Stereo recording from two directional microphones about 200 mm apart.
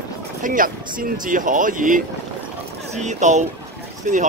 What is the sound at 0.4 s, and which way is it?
Speech, 40° right (ahead or behind).